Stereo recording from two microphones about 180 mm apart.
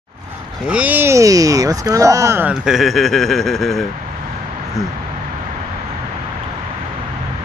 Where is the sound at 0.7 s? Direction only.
10° right (ahead or behind).